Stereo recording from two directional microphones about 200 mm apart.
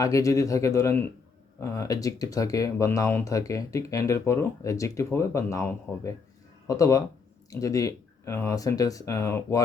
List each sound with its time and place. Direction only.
0.0 s speech: 15° left (ahead or behind)